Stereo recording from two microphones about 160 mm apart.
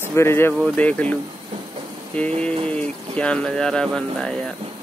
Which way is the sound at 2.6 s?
5° left (ahead or behind).